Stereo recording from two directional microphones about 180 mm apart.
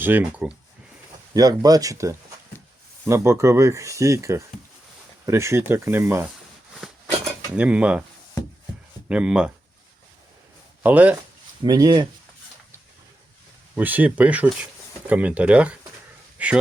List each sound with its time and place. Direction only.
0.0 s speech: 10° right (ahead or behind)
1.3 s speech: 20° right (ahead or behind)
6.8 s a sound: 5° right (ahead or behind)
7.5 s speech: 5° right (ahead or behind)
9.0 s speech: 5° right (ahead or behind)
10.8 s speech: 10° right (ahead or behind)
11.6 s speech: 20° right (ahead or behind)
13.7 s speech: 10° right (ahead or behind)